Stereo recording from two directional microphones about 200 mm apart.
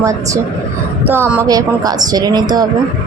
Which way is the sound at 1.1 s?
10° right (ahead or behind).